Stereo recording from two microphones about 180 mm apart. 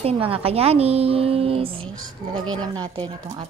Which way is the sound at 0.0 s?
30° right (ahead or behind).